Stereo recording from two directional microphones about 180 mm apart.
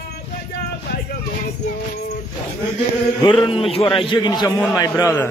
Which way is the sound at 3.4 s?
30° left (ahead or behind).